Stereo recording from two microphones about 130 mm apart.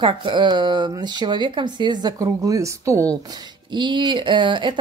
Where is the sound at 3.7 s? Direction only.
35° right (ahead or behind).